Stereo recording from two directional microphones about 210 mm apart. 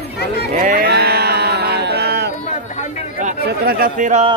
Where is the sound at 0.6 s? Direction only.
45° right (ahead or behind).